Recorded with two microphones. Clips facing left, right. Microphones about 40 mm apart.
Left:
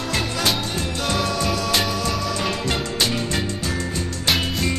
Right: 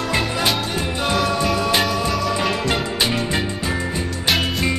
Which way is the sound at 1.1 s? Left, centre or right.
Centre.